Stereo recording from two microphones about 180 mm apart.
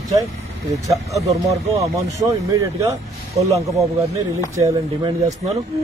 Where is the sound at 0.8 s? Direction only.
20° right (ahead or behind).